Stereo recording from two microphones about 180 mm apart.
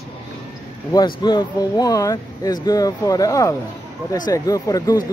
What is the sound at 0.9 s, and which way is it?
Speech, 25° left (ahead or behind).